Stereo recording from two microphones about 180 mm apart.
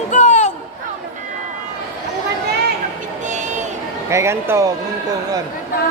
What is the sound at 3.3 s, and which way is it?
Run, 45° right (ahead or behind).